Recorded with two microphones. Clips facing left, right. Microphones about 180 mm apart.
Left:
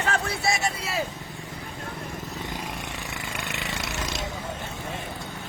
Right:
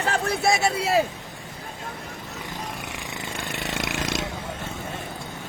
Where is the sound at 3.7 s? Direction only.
85° right.